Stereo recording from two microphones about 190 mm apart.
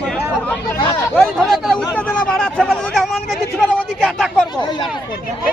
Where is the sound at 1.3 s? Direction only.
Centre (ahead or behind).